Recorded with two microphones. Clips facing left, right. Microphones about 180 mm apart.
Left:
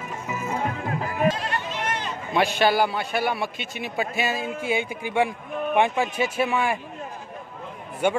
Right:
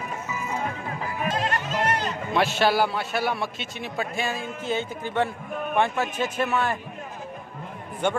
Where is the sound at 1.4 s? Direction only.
40° right (ahead or behind).